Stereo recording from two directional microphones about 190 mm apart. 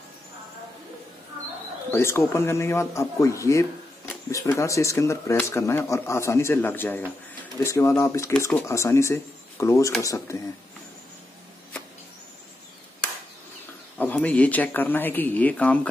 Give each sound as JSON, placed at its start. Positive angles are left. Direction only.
{"t": 1.9, "sound": "speech", "side_deg": 15}
{"t": 13.9, "sound": "speech", "side_deg": 10}